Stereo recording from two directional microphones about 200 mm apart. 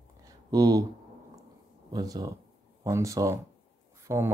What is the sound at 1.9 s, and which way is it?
Speech, 20° right (ahead or behind).